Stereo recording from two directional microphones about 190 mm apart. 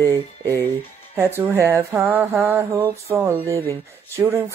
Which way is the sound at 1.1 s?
10° right (ahead or behind).